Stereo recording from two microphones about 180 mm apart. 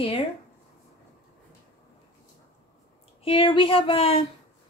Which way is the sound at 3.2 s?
30° left (ahead or behind).